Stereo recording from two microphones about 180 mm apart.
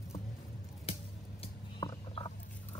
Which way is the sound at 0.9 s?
30° left (ahead or behind).